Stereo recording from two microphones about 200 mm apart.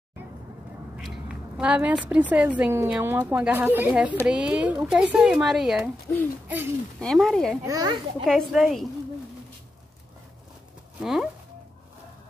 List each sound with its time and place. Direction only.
0.9 s a woman's voice: 5° right (ahead or behind)
6.1 s speech: 10° left (ahead or behind)
7.6 s a child's voice: 20° right (ahead or behind)
8.3 s speech: centre (ahead or behind)
11.0 s speech: 5° right (ahead or behind)